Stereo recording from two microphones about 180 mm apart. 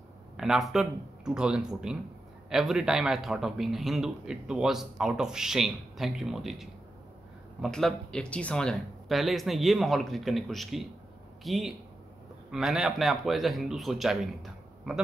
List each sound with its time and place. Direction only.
0.4 s a man's voice: centre (ahead or behind)